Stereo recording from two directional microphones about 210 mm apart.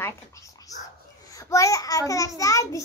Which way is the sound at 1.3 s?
15° left (ahead or behind).